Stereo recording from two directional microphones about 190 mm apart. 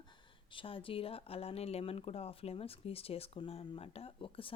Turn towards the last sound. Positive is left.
turn(degrees=30)  # may be behind; listen again after turning